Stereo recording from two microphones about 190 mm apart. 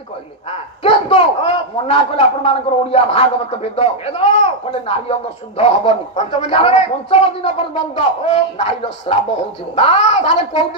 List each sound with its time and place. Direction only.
0.5 s speech: 30° left (ahead or behind)